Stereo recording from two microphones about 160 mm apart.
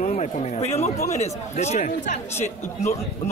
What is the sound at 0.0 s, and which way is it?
Speech, 45° left (ahead or behind).